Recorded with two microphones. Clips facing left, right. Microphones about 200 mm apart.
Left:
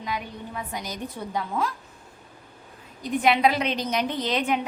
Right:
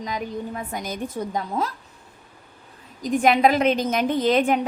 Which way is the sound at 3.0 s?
45° right (ahead or behind).